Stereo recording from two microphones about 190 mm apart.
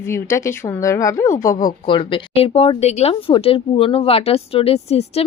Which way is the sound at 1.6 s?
25° left (ahead or behind).